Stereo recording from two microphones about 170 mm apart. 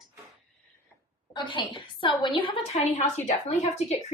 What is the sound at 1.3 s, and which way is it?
A woman's voice, 25° left (ahead or behind).